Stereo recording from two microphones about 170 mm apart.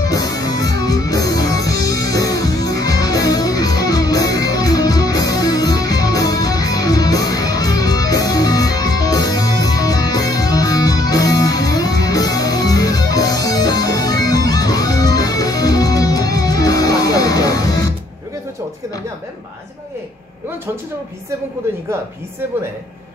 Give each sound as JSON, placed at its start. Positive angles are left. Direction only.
{"t": 0.0, "sound": "music", "side_deg": 20}